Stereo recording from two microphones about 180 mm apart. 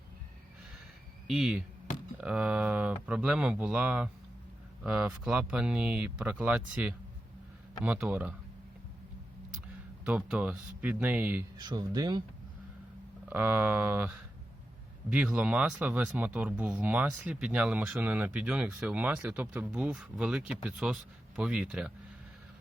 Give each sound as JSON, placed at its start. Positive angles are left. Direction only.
{"t": 1.3, "sound": "speech", "side_deg": -5}
{"t": 10.1, "sound": "speech", "side_deg": -5}
{"t": 11.5, "sound": "speech", "side_deg": -25}
{"t": 13.3, "sound": "speech", "side_deg": -10}
{"t": 15.1, "sound": "speech", "side_deg": -5}